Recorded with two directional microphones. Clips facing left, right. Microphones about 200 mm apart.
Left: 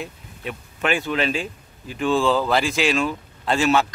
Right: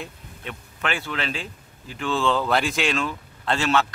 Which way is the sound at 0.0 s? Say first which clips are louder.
Left 4 dB; 10° left (ahead or behind).